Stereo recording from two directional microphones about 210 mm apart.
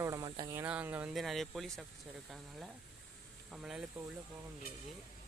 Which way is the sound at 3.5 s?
Centre (ahead or behind).